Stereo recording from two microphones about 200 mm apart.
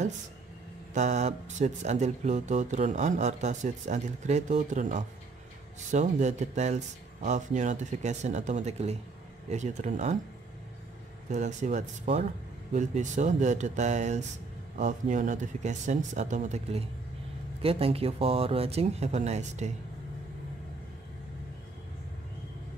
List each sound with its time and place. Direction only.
0.9 s speech: 35° right (ahead or behind)
11.2 s speech: 35° right (ahead or behind)